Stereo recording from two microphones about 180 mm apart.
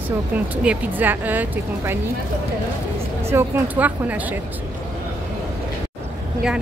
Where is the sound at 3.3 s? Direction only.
10° right (ahead or behind).